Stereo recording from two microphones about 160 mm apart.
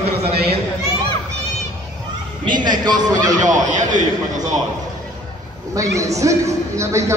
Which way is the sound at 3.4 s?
50° right (ahead or behind).